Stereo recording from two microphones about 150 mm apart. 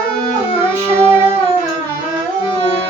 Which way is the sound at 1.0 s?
15° right (ahead or behind).